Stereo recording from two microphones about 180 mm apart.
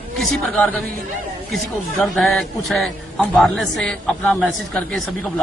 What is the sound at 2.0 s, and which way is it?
A man's voice, centre (ahead or behind).